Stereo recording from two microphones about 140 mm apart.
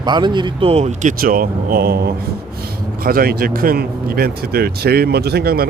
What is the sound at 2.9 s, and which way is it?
Speech, 90° right.